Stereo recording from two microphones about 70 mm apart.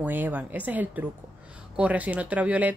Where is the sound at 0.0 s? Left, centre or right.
Right.